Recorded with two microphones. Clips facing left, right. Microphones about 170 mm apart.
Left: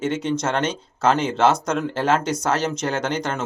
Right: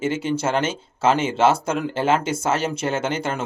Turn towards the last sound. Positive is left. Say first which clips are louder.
# even
turn(degrees=-5)  # may be behind; listen again after turning